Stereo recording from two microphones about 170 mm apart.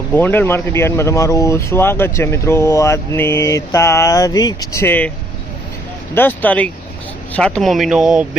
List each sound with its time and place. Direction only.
0.1 s speech: 10° left (ahead or behind)
6.1 s speech: 10° left (ahead or behind); by 8.3 s 5° right (ahead or behind)